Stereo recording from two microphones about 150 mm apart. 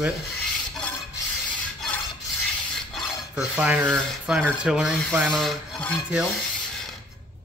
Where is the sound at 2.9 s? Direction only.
5° right (ahead or behind).